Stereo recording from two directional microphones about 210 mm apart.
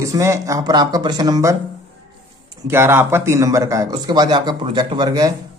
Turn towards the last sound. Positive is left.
turn(degrees=-15)  # may be behind; listen again after turning